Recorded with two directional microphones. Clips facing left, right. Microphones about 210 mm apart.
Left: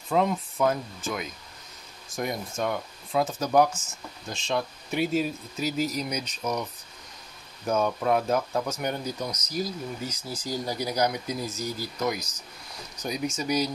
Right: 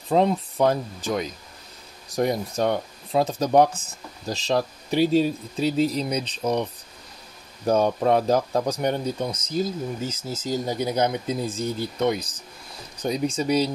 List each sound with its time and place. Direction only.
0.1 s speech: 30° right (ahead or behind)